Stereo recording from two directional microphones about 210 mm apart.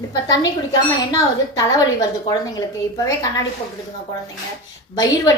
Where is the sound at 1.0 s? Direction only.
15° left (ahead or behind).